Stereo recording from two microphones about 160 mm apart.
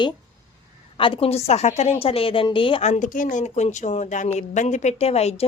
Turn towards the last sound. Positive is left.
turn(degrees=40)  # may be behind; listen again after turning